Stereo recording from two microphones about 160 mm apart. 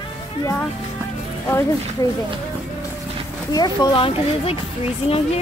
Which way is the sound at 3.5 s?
25° left (ahead or behind).